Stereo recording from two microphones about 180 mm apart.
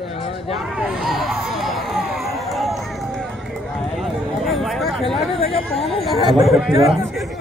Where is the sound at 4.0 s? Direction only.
Centre (ahead or behind).